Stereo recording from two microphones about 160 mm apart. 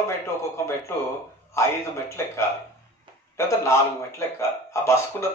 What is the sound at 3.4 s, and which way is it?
Speech, 15° left (ahead or behind).